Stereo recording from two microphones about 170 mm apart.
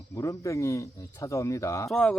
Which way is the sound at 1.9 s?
5° left (ahead or behind).